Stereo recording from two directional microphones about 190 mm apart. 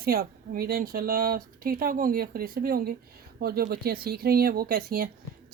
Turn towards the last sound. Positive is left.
turn(degrees=-50)  # may be behind; listen again after turning